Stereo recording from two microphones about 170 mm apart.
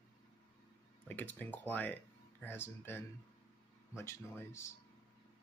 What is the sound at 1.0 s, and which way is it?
Speech, 10° left (ahead or behind).